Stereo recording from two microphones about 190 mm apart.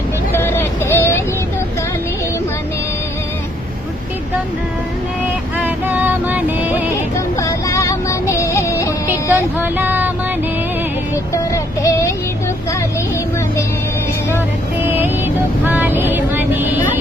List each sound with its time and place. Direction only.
0.3 s vehicle: 10° left (ahead or behind)
5.6 s a sound: 10° right (ahead or behind)
7.3 s music: 15° left (ahead or behind)
9.3 s a sound: 10° right (ahead or behind)
11.8 s child singing: 15° left (ahead or behind)
14.8 s vehicle: 10° right (ahead or behind)